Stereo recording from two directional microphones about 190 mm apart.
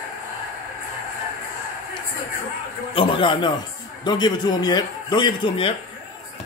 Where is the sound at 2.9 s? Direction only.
25° left (ahead or behind).